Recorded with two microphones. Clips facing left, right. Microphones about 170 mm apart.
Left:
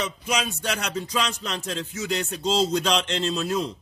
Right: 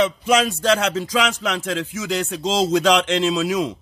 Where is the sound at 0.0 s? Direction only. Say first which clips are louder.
Right 9 dB; 90° right.